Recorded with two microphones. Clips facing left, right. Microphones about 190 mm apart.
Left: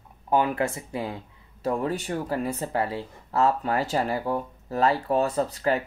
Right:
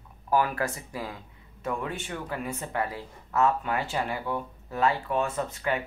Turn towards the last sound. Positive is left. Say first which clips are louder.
# left 5 dB
turn(degrees=35)  # may be behind; listen again after turning